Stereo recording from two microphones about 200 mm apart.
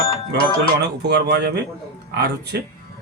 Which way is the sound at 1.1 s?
55° right (ahead or behind).